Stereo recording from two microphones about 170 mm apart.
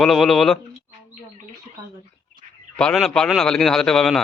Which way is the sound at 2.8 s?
Centre (ahead or behind).